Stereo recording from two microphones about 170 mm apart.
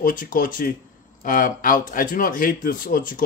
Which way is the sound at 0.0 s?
55° left (ahead or behind).